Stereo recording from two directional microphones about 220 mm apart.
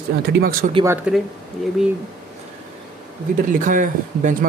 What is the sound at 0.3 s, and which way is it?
Speech, 40° right (ahead or behind).